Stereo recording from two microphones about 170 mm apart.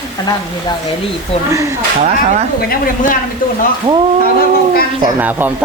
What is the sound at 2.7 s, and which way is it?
Speech, 55° left (ahead or behind).